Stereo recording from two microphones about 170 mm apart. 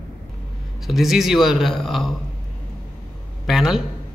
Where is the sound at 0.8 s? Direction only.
Centre (ahead or behind).